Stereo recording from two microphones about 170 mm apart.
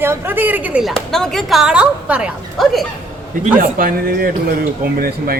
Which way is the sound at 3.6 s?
55° right (ahead or behind).